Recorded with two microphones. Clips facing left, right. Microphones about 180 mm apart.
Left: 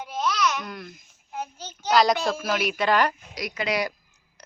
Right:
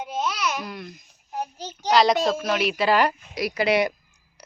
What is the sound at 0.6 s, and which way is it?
Speech, centre (ahead or behind).